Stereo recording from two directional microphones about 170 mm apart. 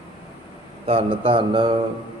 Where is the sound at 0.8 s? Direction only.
30° right (ahead or behind).